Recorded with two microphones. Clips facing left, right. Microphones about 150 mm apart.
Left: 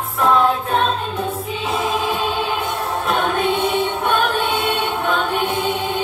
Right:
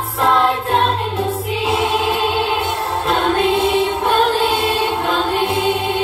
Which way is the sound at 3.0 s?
30° right (ahead or behind).